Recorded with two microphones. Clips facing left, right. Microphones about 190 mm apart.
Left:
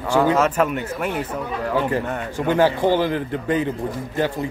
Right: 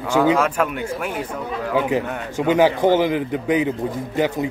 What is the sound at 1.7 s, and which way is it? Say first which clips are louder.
Speech: right 2 dB; 10° right (ahead or behind).